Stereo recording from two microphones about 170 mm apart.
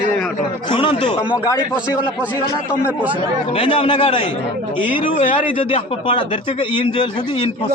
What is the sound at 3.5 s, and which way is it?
Speech, 35° left (ahead or behind).